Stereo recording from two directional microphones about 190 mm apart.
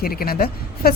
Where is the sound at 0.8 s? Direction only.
55° left (ahead or behind).